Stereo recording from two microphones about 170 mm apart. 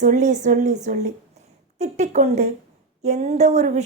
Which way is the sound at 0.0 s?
45° right (ahead or behind).